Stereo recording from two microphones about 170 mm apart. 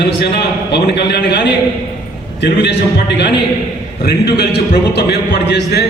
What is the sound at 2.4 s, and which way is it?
Speech, 90° left.